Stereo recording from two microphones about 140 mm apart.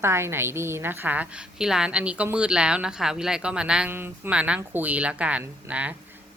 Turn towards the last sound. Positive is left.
turn(degrees=-10)  # may be behind; listen again after turning